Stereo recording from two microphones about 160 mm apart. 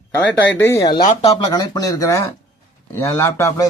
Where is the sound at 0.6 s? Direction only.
20° left (ahead or behind).